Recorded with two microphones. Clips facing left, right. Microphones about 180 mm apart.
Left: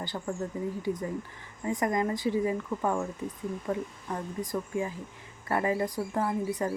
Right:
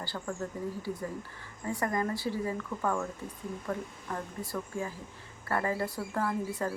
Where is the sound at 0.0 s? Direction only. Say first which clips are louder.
Left 3 dB; 20° left (ahead or behind).